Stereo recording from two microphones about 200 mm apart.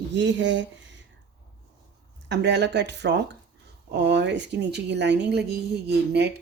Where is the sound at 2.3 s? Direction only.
60° right (ahead or behind).